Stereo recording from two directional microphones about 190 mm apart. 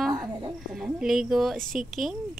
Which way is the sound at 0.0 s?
5° right (ahead or behind).